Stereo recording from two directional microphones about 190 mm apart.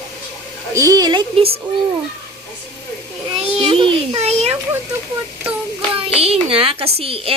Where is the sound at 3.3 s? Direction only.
30° right (ahead or behind).